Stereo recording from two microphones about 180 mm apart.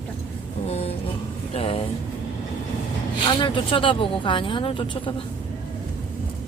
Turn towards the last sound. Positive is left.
turn(degrees=30)  # may be behind; listen again after turning